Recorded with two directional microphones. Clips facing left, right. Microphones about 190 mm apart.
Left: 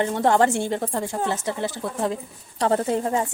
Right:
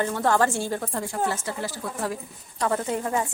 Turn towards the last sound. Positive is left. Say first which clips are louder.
# left 4 dB
turn(degrees=30)  # may be behind; listen again after turning